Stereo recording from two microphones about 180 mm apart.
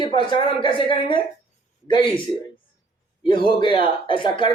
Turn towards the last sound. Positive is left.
turn(degrees=25)  # may be behind; listen again after turning